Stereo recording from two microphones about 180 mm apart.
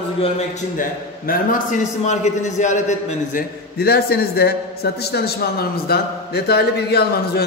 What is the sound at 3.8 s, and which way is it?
A man's voice, 60° left (ahead or behind).